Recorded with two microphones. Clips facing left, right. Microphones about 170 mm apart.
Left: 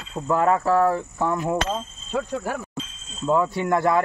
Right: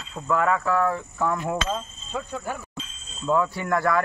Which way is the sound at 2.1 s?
70° left (ahead or behind).